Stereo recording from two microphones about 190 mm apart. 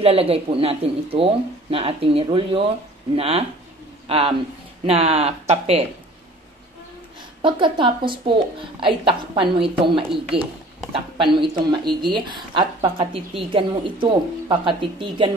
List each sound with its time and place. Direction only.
0.0 s speech: 30° right (ahead or behind)
7.4 s speech: 25° right (ahead or behind)